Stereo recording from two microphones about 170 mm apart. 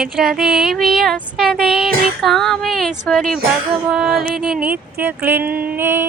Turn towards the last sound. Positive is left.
turn(degrees=-15)  # may be behind; listen again after turning